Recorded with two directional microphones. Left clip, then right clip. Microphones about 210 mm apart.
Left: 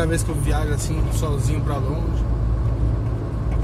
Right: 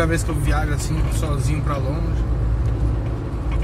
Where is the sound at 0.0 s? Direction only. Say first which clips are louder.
Right 2 dB; 20° left (ahead or behind).